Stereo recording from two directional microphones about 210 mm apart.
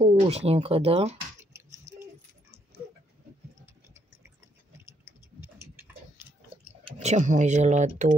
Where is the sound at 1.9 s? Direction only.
35° right (ahead or behind).